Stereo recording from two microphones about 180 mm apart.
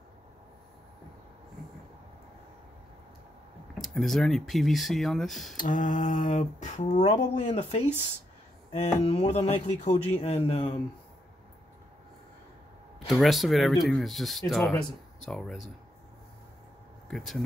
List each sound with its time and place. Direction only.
3.7 s speech: centre (ahead or behind)
5.6 s speech: 45° left (ahead or behind)
13.1 s speech: centre (ahead or behind)
17.1 s speech: centre (ahead or behind)